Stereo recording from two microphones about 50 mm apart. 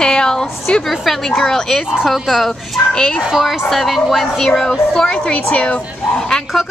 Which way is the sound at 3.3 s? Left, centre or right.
Centre.